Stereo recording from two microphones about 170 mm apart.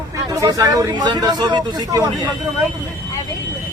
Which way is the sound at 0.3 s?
20° right (ahead or behind).